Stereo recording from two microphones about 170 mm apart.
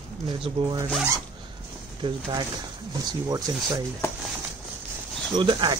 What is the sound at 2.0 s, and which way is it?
Speech, 25° right (ahead or behind).